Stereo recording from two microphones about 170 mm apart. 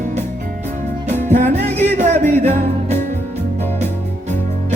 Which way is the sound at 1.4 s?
10° left (ahead or behind).